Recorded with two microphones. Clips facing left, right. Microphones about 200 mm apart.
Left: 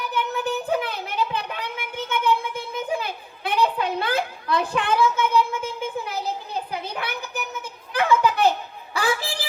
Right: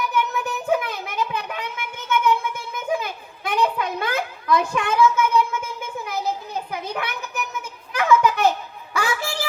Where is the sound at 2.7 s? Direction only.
30° left (ahead or behind).